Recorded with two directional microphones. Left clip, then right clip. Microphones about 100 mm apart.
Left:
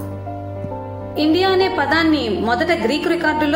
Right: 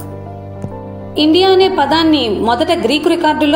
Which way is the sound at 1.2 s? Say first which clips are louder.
Right 6 dB; 20° right (ahead or behind).